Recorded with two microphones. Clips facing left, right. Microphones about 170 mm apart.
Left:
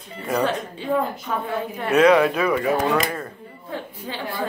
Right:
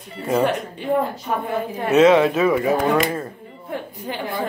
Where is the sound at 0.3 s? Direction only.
20° right (ahead or behind).